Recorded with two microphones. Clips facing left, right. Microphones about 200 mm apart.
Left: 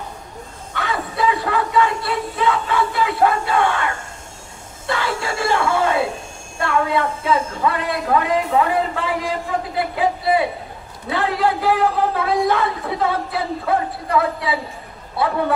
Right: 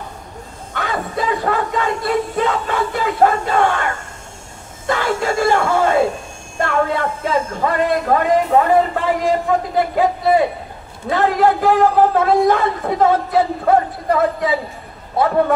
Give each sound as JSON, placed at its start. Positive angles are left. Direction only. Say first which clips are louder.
{"t": 0.7, "sound": "a man's voice", "louder": "right 1 dB", "side_deg": -45}